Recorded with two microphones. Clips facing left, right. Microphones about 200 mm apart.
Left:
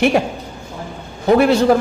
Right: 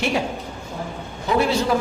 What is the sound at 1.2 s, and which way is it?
Speech, 55° left (ahead or behind).